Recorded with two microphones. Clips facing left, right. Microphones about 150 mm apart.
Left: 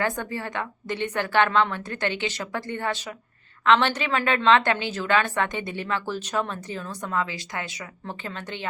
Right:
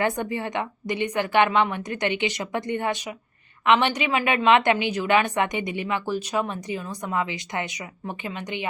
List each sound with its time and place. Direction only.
0.0 s a woman's voice: 20° right (ahead or behind)